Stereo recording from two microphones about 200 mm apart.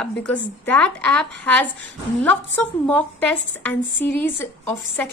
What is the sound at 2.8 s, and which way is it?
A woman's voice, 5° left (ahead or behind).